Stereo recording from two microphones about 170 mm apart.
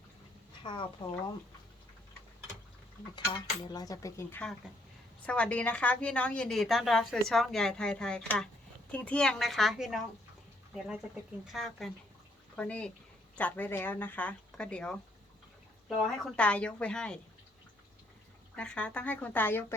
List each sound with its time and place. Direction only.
0.6 s speech: 30° left (ahead or behind)
3.3 s a woman's voice: 25° left (ahead or behind); by 14.9 s 5° left (ahead or behind)
16.2 s speech: 5° left (ahead or behind)
18.5 s a woman's voice: 5° left (ahead or behind)